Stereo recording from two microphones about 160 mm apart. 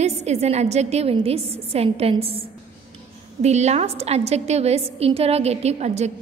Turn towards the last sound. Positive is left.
turn(degrees=-45)  # may be behind; listen again after turning